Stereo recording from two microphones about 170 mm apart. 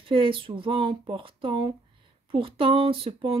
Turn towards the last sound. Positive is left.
turn(degrees=-35)  # may be behind; listen again after turning